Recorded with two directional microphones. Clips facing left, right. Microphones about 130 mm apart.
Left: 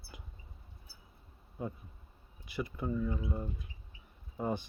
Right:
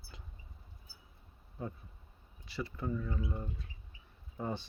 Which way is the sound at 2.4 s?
20° left (ahead or behind).